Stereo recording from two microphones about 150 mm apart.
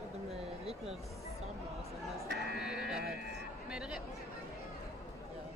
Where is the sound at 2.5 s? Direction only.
5° right (ahead or behind).